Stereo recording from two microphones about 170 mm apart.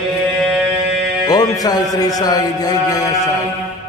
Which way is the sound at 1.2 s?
20° left (ahead or behind).